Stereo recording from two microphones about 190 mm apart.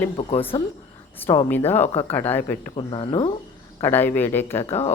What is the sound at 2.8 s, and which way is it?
Speech, 25° left (ahead or behind).